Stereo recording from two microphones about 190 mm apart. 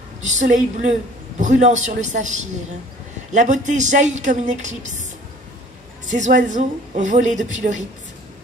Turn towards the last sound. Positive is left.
turn(degrees=-40)  # may be behind; listen again after turning